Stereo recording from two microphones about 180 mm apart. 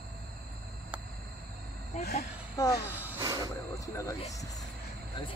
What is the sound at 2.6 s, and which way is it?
Speech, 20° left (ahead or behind).